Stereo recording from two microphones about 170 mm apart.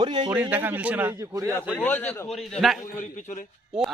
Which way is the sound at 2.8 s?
50° left (ahead or behind).